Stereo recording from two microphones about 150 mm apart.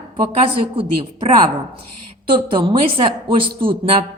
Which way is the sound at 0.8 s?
35° right (ahead or behind).